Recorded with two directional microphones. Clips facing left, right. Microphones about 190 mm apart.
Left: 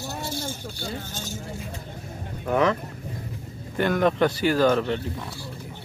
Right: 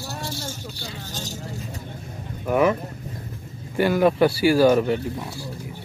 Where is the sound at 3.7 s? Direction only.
5° right (ahead or behind).